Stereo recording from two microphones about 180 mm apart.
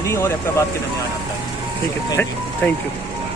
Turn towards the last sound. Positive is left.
turn(degrees=10)  # may be behind; listen again after turning